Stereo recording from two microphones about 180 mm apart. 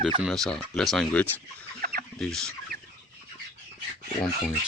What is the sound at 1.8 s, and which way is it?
Chicken, 55° right (ahead or behind).